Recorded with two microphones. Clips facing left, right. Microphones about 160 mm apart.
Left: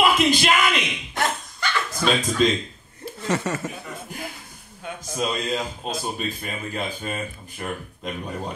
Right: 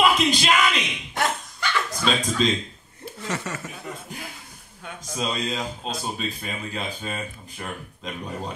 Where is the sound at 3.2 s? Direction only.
40° left (ahead or behind).